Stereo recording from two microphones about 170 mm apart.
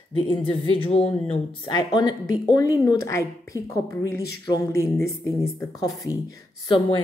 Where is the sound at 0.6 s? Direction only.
35° left (ahead or behind).